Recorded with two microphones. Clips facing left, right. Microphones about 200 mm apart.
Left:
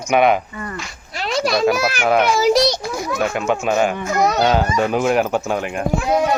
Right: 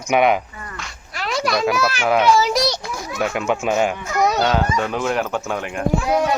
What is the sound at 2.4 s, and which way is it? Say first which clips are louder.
Speech: left 4 dB; 40° left (ahead or behind).